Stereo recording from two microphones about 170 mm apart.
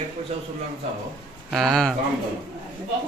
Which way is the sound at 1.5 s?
Centre (ahead or behind).